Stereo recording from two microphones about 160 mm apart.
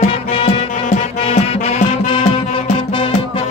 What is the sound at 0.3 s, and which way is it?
Music, 45° left (ahead or behind).